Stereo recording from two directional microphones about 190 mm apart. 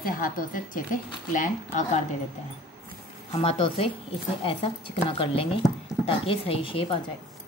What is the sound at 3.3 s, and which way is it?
Speech, 30° left (ahead or behind).